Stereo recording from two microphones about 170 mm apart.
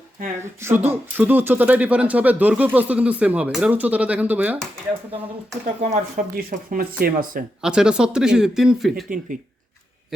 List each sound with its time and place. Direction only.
0.6 s speech: 10° right (ahead or behind)
5.9 s speech: 55° right (ahead or behind)
7.6 s speech: 5° right (ahead or behind)
9.0 s speech: 55° right (ahead or behind)
10.1 s speech: centre (ahead or behind)